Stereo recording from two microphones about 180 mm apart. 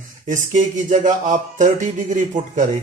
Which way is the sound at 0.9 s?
45° right (ahead or behind).